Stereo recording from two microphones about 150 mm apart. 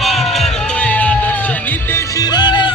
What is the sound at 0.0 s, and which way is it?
Music, centre (ahead or behind).